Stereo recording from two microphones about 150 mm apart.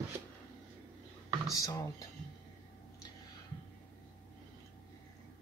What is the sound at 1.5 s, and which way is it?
Speech, 20° left (ahead or behind).